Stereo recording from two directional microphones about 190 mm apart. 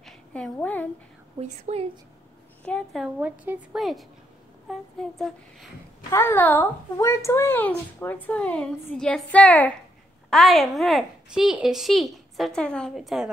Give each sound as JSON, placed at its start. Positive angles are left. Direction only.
{"t": 0.0, "sound": "a sound", "side_deg": 5}
{"t": 1.4, "sound": "a woman's voice", "side_deg": -35}
{"t": 2.6, "sound": "a woman's voice", "side_deg": 5}
{"t": 6.1, "sound": "a woman's voice", "side_deg": 10}